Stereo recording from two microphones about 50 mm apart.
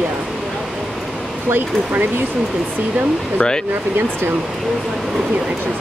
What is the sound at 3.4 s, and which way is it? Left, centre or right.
Speech, centre.